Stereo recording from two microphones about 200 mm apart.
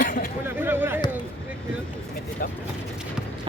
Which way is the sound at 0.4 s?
10° right (ahead or behind).